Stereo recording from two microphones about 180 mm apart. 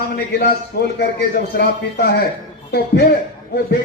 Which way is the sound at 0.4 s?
65° left (ahead or behind).